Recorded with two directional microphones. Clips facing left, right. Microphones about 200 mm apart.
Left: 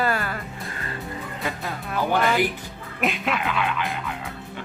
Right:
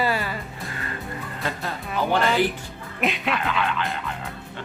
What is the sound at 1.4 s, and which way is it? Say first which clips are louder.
Music: right 1 dB; 5° left (ahead or behind).